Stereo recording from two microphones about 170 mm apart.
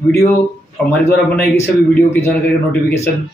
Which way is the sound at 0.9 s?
10° left (ahead or behind).